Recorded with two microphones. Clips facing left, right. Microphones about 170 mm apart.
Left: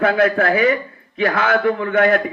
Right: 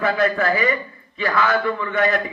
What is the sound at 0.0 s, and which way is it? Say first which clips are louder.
A man's voice: left 4 dB; 65° left (ahead or behind).